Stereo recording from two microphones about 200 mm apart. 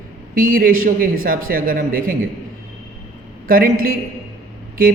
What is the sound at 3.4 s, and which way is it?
Speech, 45° right (ahead or behind).